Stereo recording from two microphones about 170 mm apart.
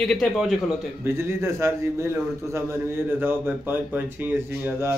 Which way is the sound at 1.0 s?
15° right (ahead or behind).